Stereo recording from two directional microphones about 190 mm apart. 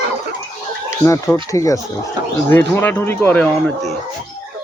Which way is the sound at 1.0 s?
15° left (ahead or behind).